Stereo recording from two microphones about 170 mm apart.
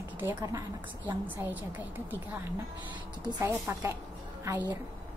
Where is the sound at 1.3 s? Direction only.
10° right (ahead or behind).